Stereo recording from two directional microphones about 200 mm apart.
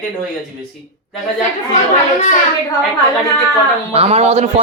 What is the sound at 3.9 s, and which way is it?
Speech, 30° right (ahead or behind).